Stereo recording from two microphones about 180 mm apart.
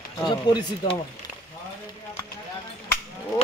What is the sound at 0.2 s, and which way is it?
Speech, 20° left (ahead or behind).